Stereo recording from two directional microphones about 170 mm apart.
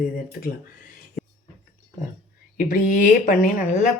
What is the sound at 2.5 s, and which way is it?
Speech, 55° left (ahead or behind).